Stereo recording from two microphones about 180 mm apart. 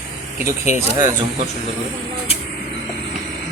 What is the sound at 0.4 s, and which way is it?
Speech, 15° right (ahead or behind).